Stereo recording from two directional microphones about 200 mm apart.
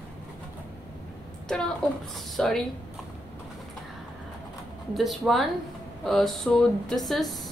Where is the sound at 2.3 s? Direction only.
Centre (ahead or behind).